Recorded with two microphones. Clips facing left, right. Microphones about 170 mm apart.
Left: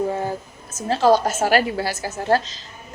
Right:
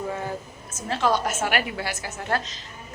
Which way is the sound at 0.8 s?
35° left (ahead or behind).